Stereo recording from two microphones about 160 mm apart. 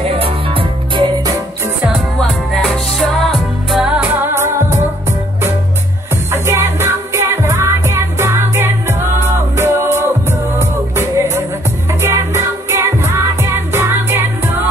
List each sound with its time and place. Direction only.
0.0 s music: 35° right (ahead or behind)
1.9 s music: 5° left (ahead or behind); by 4.7 s 15° right (ahead or behind)
6.3 s music: 15° right (ahead or behind)